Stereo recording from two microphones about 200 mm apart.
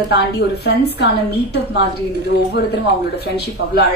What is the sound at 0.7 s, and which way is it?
Speech, 55° left (ahead or behind).